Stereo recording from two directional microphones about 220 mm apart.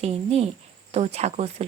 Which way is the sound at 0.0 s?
25° right (ahead or behind).